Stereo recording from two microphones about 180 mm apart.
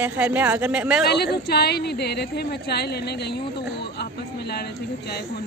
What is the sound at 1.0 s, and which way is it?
A woman's voice, 65° left (ahead or behind).